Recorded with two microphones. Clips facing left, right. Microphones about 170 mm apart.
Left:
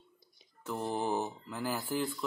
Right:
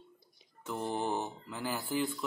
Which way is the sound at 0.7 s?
Centre (ahead or behind).